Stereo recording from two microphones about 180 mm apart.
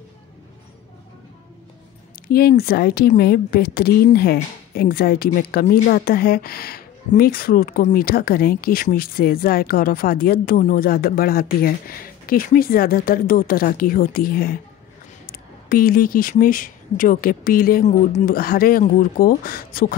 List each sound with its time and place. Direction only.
2.2 s speech: 55° left (ahead or behind)
15.7 s speech: 55° left (ahead or behind)